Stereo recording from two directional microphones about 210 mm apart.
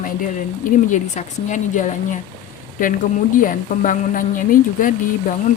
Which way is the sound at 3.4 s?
40° left (ahead or behind).